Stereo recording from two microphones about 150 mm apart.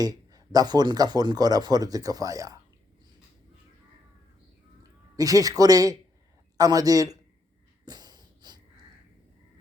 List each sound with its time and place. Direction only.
0.0 s speech: 25° right (ahead or behind)
4.8 s a man's voice: 25° right (ahead or behind)
7.9 s a sound: 25° right (ahead or behind)